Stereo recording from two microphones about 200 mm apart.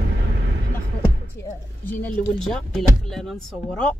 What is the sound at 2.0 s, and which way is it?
Speech, centre (ahead or behind).